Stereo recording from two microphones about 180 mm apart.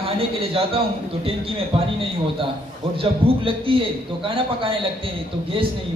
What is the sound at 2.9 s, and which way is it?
A man's voice, 30° right (ahead or behind).